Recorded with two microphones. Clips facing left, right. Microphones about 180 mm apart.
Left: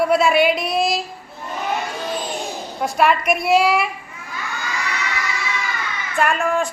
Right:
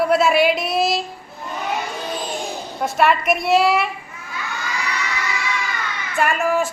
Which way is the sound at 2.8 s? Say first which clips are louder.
Even; centre (ahead or behind).